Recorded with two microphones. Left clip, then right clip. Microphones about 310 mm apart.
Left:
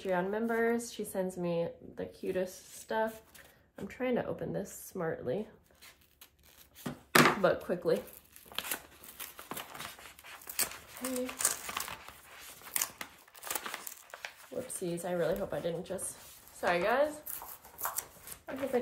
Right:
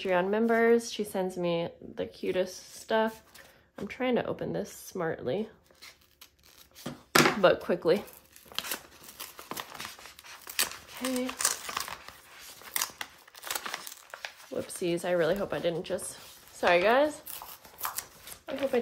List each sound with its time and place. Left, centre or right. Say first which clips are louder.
0.0 s speech: right 6 dB; centre
6.8 s chopping: right 1 dB; centre
7.6 s speech: right 5 dB; centre
8.5 s a sound: right 3 dB; centre
14.5 s speech: right 7 dB; centre
17.7 s a sound: right 2 dB; centre